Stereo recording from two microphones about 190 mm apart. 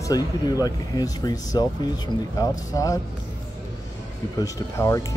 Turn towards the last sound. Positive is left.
turn(degrees=15)  # may be behind; listen again after turning